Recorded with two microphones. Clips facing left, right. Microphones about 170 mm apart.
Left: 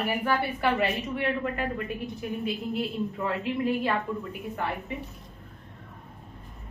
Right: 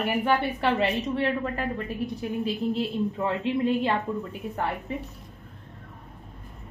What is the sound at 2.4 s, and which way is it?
Speech, 30° right (ahead or behind).